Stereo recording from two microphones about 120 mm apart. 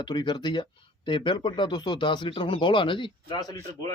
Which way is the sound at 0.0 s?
40° left (ahead or behind).